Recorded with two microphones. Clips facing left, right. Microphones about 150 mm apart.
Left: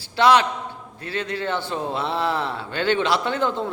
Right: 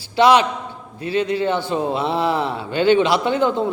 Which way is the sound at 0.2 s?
15° right (ahead or behind).